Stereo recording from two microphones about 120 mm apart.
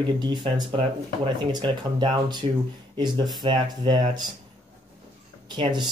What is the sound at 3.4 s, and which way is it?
Speech, 40° right (ahead or behind).